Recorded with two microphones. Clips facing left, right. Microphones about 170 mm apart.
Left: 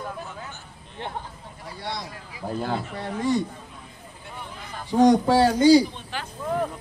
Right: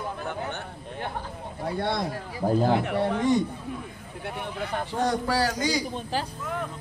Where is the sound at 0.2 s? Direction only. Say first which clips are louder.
Right 6 dB; 65° right (ahead or behind).